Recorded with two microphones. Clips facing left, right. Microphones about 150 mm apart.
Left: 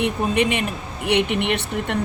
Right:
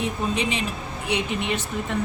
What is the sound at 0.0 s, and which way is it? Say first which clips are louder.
Speech: left 5 dB; 60° left (ahead or behind).